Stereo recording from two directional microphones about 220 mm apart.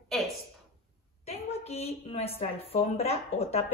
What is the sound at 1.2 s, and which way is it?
A woman's voice, 30° left (ahead or behind).